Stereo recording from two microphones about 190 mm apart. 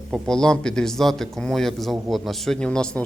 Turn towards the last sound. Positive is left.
turn(degrees=5)  # may be behind; listen again after turning